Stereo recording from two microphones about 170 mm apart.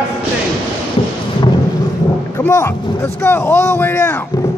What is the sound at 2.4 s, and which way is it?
Speech, 15° left (ahead or behind).